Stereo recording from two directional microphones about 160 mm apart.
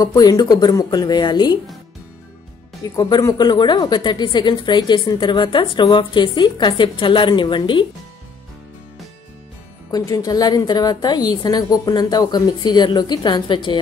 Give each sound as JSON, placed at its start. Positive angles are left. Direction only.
{"t": 0.0, "sound": "a woman's voice", "side_deg": 25}
{"t": 3.0, "sound": "a woman's voice", "side_deg": 25}
{"t": 9.8, "sound": "a woman's voice", "side_deg": 25}